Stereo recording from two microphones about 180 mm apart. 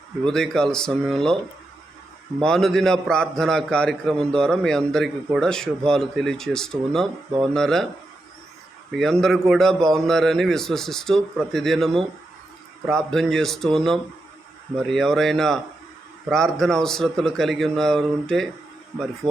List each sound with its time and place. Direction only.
0.3 s a man's voice: 5° left (ahead or behind)
2.4 s a man's voice: 5° left (ahead or behind)
8.9 s a man's voice: centre (ahead or behind)
19.2 s speech: 25° right (ahead or behind)